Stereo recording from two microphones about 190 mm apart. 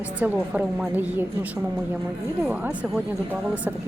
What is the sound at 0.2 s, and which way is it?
A woman's voice, 10° right (ahead or behind).